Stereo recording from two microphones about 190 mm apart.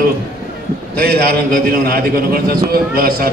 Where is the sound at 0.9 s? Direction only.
55° right (ahead or behind).